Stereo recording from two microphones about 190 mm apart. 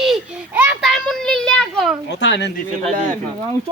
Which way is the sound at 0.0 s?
5° right (ahead or behind).